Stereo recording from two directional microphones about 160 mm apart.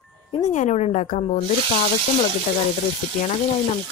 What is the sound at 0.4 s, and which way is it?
Speech, 50° left (ahead or behind).